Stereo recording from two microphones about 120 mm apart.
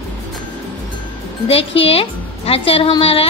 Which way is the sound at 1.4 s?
55° left (ahead or behind).